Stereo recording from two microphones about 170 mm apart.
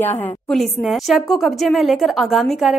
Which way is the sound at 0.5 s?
Centre (ahead or behind).